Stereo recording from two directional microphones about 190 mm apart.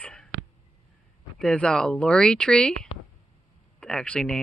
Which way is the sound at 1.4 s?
5° left (ahead or behind).